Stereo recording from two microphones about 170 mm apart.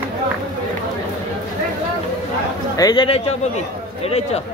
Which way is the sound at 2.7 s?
25° left (ahead or behind).